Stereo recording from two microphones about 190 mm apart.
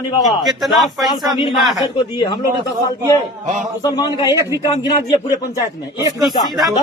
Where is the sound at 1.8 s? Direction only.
20° left (ahead or behind).